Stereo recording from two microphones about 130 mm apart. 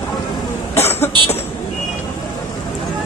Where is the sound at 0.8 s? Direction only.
20° left (ahead or behind).